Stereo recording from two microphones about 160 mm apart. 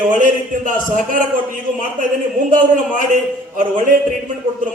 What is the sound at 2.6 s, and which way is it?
A man's voice, 55° right (ahead or behind).